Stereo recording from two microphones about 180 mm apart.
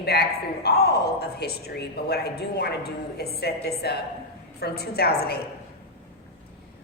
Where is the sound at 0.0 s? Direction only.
60° left (ahead or behind).